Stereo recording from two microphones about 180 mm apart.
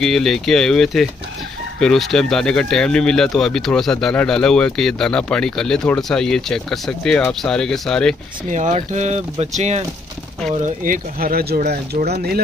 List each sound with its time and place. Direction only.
0.0 s speech: centre (ahead or behind)
8.5 s speech: 40° right (ahead or behind); by 12.4 s 60° right (ahead or behind)